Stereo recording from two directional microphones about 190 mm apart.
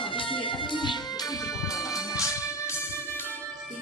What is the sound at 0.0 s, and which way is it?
Music, 25° left (ahead or behind).